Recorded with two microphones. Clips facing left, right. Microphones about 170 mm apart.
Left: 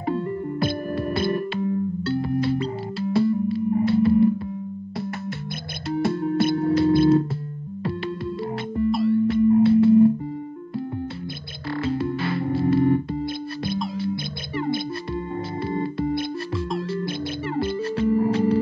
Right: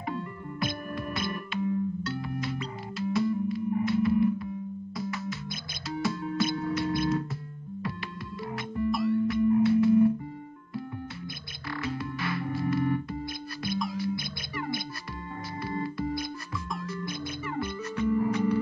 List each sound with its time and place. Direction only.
0.0 s music: 30° left (ahead or behind)
4.9 s music: 60° left (ahead or behind)
6.7 s music: 30° left (ahead or behind)
8.7 s music: 30° left (ahead or behind)
11.7 s music: 30° left (ahead or behind)